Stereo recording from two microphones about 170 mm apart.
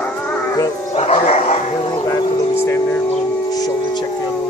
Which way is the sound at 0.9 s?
40° left (ahead or behind).